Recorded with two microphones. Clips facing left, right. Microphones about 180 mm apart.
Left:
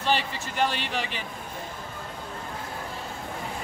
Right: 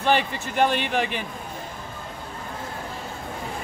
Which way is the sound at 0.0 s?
55° right (ahead or behind).